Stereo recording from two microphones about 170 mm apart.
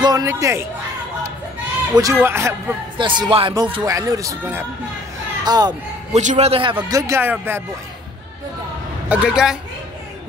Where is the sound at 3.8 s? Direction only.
20° right (ahead or behind).